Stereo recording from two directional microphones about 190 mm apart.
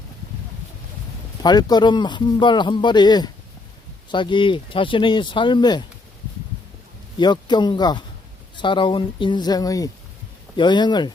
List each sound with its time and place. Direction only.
1.4 s speech: 20° left (ahead or behind)
7.2 s speech: 25° left (ahead or behind)